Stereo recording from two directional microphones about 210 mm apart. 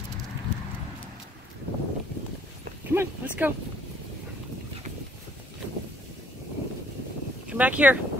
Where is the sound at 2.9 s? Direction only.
10° right (ahead or behind).